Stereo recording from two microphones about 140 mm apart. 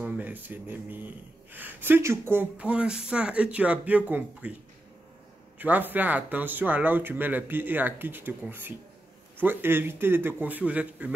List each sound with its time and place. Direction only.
0.0 s speech: 10° right (ahead or behind)
5.6 s speech: 15° right (ahead or behind)